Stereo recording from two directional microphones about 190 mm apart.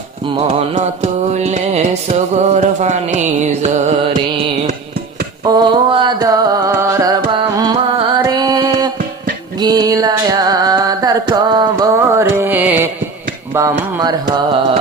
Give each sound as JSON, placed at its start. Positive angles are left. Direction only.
{"t": 0.3, "sound": "mantra", "side_deg": -30}
{"t": 5.5, "sound": "music", "side_deg": -25}
{"t": 7.3, "sound": "carnatic music", "side_deg": -25}
{"t": 8.2, "sound": "music", "side_deg": -20}
{"t": 9.6, "sound": "a sound", "side_deg": -20}
{"t": 13.5, "sound": "mantra", "side_deg": -15}